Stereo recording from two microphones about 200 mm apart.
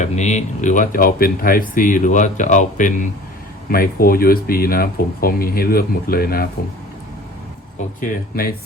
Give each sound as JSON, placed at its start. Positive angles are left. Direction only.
{"t": 0.0, "sound": "speech", "side_deg": 35}
{"t": 8.0, "sound": "speech", "side_deg": 40}